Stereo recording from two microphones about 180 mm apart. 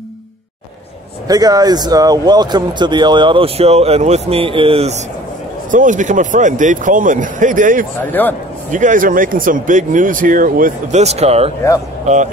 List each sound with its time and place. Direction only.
1.2 s speech: 20° right (ahead or behind)
5.7 s speech: 45° right (ahead or behind)
8.0 s a man's voice: 10° left (ahead or behind)
8.7 s speech: 45° right (ahead or behind)